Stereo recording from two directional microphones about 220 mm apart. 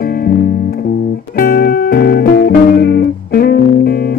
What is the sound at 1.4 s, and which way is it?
Music, 40° left (ahead or behind).